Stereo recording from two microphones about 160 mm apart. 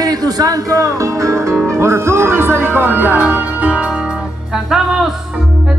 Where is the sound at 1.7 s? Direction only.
15° right (ahead or behind).